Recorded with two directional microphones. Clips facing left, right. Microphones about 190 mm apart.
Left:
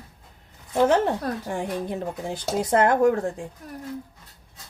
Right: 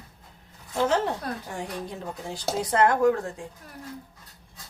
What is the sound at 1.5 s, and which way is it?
Speech, 55° left (ahead or behind).